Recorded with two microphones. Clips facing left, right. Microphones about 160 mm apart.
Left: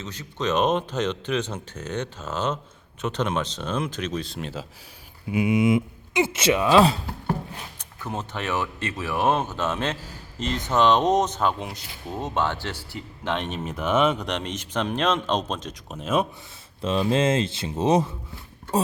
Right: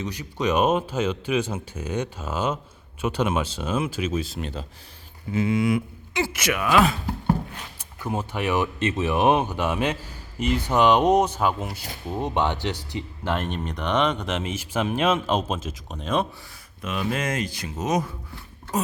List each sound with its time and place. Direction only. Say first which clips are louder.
0.0 s speech: right 3 dB; 10° right (ahead or behind)
5.3 s speech: left 2 dB; 15° left (ahead or behind)
7.8 s speech: right 4 dB; 10° right (ahead or behind)
13.2 s speech: even; 5° right (ahead or behind)
16.8 s speech: left 5 dB; 30° left (ahead or behind)